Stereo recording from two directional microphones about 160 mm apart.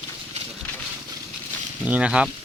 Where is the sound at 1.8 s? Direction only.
10° right (ahead or behind).